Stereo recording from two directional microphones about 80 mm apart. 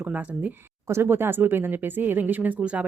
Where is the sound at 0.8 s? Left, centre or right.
Right.